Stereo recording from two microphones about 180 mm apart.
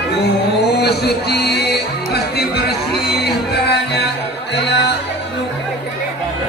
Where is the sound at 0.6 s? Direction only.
65° left (ahead or behind).